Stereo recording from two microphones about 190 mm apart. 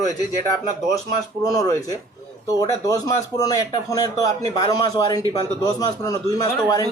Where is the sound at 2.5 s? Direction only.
20° left (ahead or behind).